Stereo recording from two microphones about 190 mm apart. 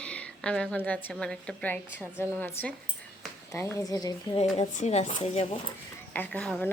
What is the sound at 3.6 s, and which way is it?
Speech, 15° left (ahead or behind).